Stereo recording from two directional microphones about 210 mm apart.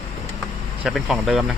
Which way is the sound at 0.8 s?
Centre (ahead or behind).